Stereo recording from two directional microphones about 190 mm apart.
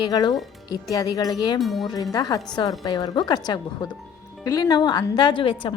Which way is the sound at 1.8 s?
20° left (ahead or behind).